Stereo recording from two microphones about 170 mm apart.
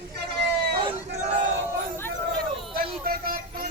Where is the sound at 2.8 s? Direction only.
60° right (ahead or behind).